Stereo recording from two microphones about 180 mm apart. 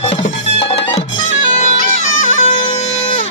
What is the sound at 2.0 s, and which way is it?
Music, 40° left (ahead or behind).